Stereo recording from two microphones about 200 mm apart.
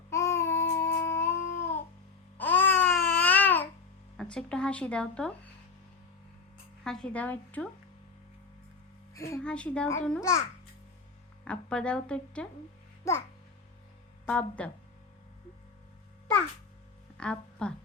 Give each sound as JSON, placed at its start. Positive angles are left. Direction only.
{"t": 0.1, "sound": "babbling", "side_deg": 15}
{"t": 4.2, "sound": "a woman's voice", "side_deg": 5}
{"t": 6.8, "sound": "a woman's voice", "side_deg": 5}
{"t": 9.1, "sound": "a woman's voice", "side_deg": 15}
{"t": 9.4, "sound": "a woman's voice", "side_deg": 5}
{"t": 11.4, "sound": "a woman's voice", "side_deg": 5}
{"t": 14.3, "sound": "a woman's voice", "side_deg": 5}
{"t": 17.2, "sound": "speech", "side_deg": 5}